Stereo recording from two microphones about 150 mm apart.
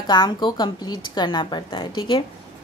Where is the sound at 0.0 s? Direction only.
30° left (ahead or behind).